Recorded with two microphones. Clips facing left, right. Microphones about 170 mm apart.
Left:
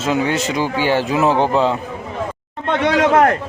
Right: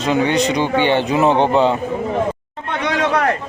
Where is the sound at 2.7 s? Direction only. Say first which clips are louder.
Left 4 dB; 50° left (ahead or behind).